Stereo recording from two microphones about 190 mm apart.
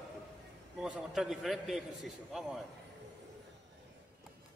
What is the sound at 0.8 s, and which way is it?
A man's voice, centre (ahead or behind).